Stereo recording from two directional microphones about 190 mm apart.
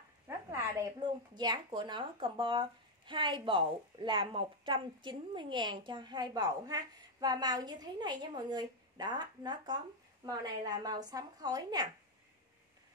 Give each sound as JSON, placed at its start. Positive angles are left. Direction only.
{"t": 1.0, "sound": "speech", "side_deg": -20}